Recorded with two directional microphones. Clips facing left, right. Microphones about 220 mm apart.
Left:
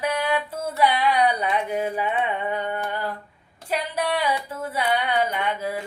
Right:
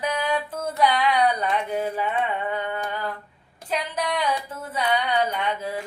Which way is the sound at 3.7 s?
10° left (ahead or behind).